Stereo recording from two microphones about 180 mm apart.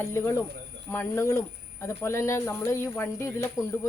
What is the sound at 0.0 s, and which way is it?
Speech, 15° left (ahead or behind).